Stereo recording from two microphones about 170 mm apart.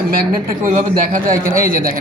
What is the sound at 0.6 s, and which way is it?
Speech, 50° right (ahead or behind).